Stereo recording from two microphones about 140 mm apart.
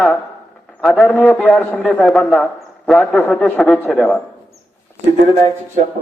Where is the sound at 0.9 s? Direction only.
10° left (ahead or behind).